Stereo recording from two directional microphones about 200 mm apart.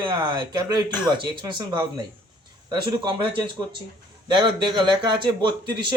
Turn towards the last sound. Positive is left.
turn(degrees=-20)  # may be behind; listen again after turning